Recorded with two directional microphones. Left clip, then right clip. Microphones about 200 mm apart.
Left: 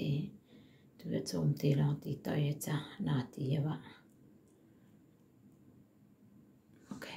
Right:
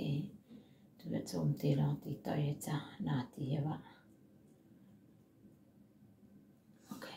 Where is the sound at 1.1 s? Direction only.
30° left (ahead or behind).